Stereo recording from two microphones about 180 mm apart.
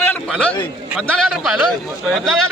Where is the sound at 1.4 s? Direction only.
Centre (ahead or behind).